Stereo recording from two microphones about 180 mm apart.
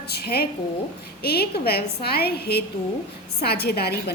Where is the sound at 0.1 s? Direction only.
60° left (ahead or behind).